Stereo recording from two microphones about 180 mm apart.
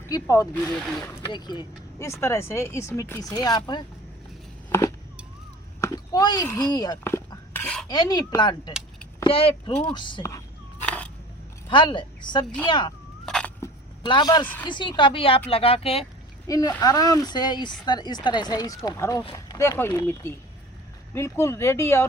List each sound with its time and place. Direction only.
0.1 s speech: 20° left (ahead or behind)
0.5 s speech: 5° left (ahead or behind)
1.0 s speech: 25° left (ahead or behind)
5.8 s a sound: 20° left (ahead or behind)
6.7 s cutlery: 20° left (ahead or behind); by 7.9 s 5° left (ahead or behind)
7.9 s speech: 20° left (ahead or behind)
10.8 s a sound: 5° left (ahead or behind)
11.7 s speech: 25° left (ahead or behind)
13.2 s a sound: 5° left (ahead or behind)
13.6 s a sound: 25° left (ahead or behind)
14.6 s speech: 25° left (ahead or behind)
16.5 s speech: 20° left (ahead or behind)
19.2 s speech: 30° left (ahead or behind)
19.5 s speech: 15° left (ahead or behind)